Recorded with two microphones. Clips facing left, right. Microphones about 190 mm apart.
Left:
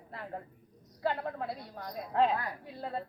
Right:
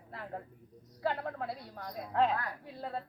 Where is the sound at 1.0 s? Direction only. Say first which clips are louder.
Left 1 dB; centre (ahead or behind).